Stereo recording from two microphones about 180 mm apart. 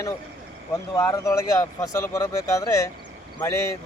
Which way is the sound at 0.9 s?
20° left (ahead or behind).